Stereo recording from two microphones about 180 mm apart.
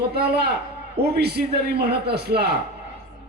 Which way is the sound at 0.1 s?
60° right (ahead or behind).